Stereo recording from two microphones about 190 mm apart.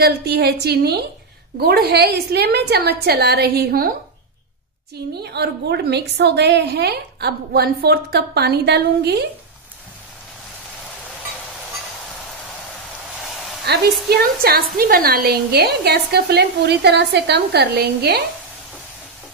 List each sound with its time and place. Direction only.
0.0 s a woman's voice: 60° right (ahead or behind)
4.9 s a woman's voice: 60° right (ahead or behind)
13.7 s a sound: 60° right (ahead or behind)
14.0 s a woman's voice: 55° right (ahead or behind)